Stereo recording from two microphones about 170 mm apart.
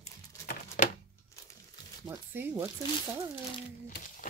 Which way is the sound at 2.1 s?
10° right (ahead or behind).